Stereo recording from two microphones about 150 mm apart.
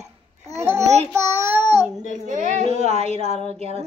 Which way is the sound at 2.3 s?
50° right (ahead or behind).